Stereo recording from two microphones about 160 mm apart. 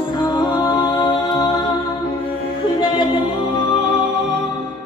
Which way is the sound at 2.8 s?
30° left (ahead or behind).